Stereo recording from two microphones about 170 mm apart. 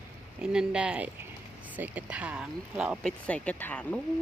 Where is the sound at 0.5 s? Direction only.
5° right (ahead or behind).